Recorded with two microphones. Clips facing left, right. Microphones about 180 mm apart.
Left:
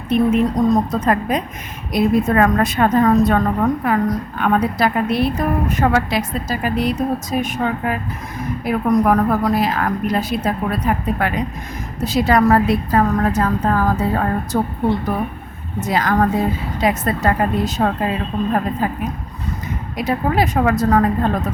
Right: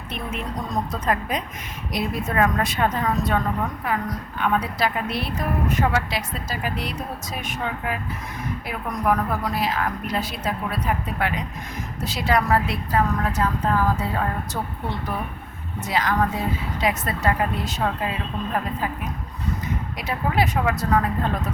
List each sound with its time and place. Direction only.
0.1 s a woman's voice: 40° left (ahead or behind)
20.0 s a woman's voice: 45° left (ahead or behind)